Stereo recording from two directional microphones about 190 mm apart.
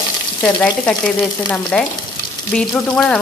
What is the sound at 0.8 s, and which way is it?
Speech, 5° left (ahead or behind).